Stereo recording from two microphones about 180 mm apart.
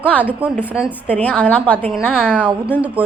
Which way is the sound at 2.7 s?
5° right (ahead or behind).